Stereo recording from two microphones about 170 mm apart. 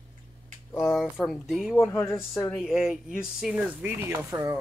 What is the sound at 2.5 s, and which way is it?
Speech, centre (ahead or behind).